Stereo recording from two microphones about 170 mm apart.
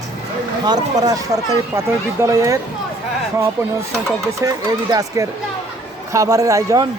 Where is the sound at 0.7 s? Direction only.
20° right (ahead or behind).